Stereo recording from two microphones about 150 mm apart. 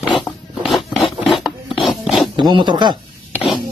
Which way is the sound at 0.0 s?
5° right (ahead or behind).